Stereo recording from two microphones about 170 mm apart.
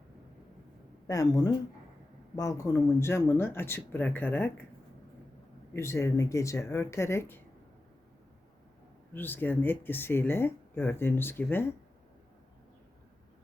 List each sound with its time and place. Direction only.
1.0 s speech: 20° left (ahead or behind)
5.7 s speech: 15° left (ahead or behind)
9.1 s speech: 10° left (ahead or behind)